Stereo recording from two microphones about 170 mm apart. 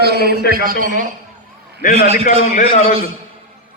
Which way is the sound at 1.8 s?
55° left (ahead or behind).